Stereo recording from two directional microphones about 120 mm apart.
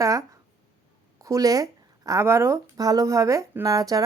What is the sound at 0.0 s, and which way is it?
A woman's voice, 30° right (ahead or behind).